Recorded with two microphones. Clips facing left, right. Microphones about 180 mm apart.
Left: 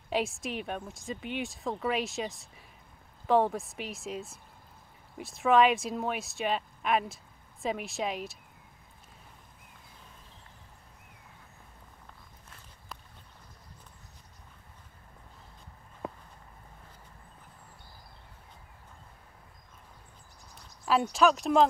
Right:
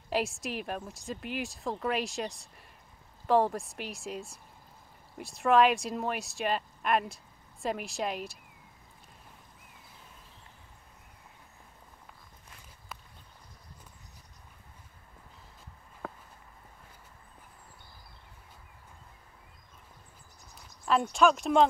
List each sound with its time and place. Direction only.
0.1 s a woman's voice: centre (ahead or behind)
16.0 s walk: 20° left (ahead or behind)
21.1 s a woman's voice: centre (ahead or behind)